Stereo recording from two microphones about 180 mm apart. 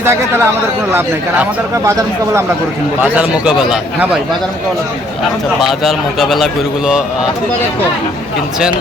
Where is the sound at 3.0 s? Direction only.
5° right (ahead or behind).